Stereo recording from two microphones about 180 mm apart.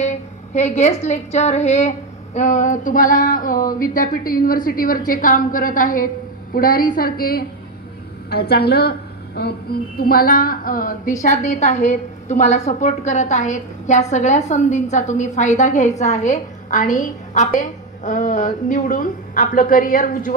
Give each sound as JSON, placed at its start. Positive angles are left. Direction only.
{"t": 0.0, "sound": "a woman's voice", "side_deg": 40}